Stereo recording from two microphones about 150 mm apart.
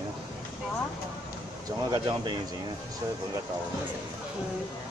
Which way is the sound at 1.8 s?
25° right (ahead or behind).